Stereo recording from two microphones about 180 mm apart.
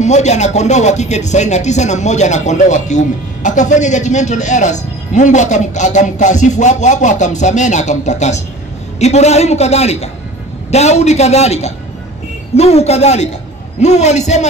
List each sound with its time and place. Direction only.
0.0 s speech: 40° left (ahead or behind)